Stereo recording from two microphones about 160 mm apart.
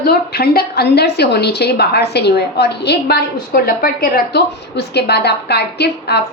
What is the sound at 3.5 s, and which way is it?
A woman's voice, 65° left (ahead or behind).